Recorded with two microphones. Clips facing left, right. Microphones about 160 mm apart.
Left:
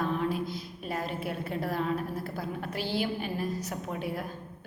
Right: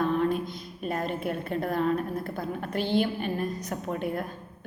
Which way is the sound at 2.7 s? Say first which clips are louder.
Right 8 dB; 55° right (ahead or behind).